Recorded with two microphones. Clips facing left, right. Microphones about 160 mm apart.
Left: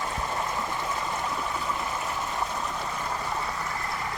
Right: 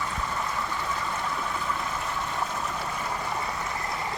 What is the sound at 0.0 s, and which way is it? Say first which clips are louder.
Vehicle: left 1 dB; 25° left (ahead or behind).